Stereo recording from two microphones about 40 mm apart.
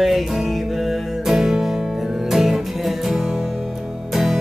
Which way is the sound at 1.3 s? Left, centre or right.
Centre.